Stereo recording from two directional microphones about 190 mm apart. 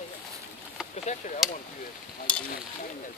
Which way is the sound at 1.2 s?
40° left (ahead or behind).